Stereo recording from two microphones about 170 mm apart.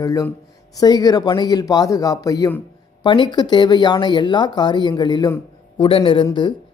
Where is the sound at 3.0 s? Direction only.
30° left (ahead or behind).